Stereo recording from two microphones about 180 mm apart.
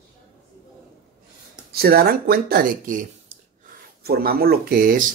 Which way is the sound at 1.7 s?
60° right (ahead or behind).